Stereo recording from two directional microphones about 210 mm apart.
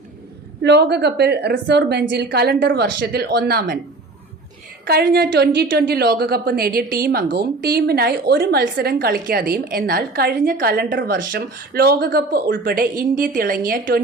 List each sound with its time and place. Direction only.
0.6 s a woman's voice: 55° right (ahead or behind)
4.9 s a woman's voice: 50° right (ahead or behind)